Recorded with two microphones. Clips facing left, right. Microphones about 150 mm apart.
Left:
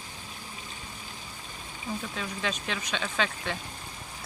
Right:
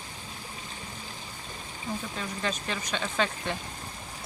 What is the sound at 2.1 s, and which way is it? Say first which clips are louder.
Speech: even; 5° left (ahead or behind).